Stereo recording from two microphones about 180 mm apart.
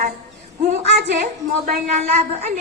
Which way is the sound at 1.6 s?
45° right (ahead or behind).